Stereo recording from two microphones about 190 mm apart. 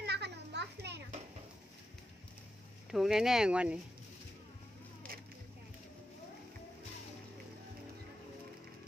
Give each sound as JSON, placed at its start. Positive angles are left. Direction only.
{"t": 0.0, "sound": "children playing", "side_deg": -60}
{"t": 2.9, "sound": "speech", "side_deg": 0}